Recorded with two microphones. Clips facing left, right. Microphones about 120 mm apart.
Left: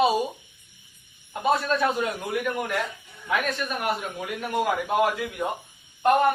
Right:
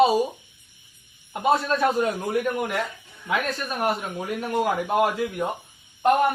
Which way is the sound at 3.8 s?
40° right (ahead or behind).